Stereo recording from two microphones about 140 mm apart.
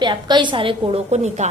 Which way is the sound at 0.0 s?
35° right (ahead or behind).